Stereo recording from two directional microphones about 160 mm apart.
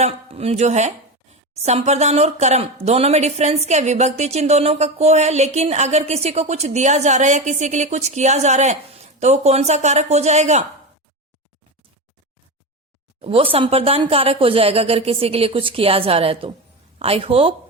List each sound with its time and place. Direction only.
0.0 s a woman's voice: 40° right (ahead or behind)
13.2 s speech: 35° right (ahead or behind)